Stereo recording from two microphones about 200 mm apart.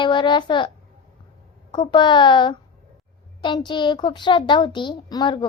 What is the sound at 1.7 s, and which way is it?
Child singing, 25° left (ahead or behind).